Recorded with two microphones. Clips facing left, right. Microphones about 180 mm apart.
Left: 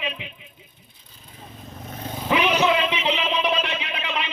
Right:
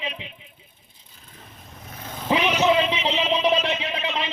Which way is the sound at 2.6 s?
30° right (ahead or behind).